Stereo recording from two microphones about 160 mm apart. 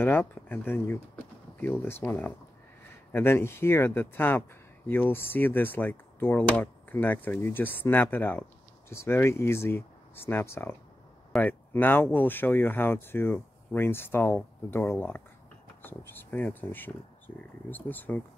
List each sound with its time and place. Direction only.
0.0 s speech: 15° left (ahead or behind)